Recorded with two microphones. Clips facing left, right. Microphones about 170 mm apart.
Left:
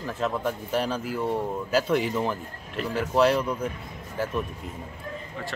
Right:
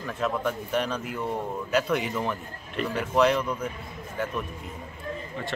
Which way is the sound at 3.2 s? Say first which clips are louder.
Left 1 dB; 35° left (ahead or behind).